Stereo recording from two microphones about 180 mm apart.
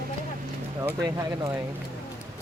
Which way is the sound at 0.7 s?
20° right (ahead or behind).